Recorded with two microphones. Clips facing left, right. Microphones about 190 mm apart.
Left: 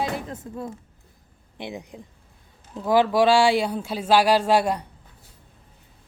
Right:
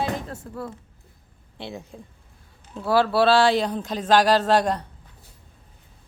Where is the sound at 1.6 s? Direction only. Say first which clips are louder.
Left 1 dB; 15° left (ahead or behind).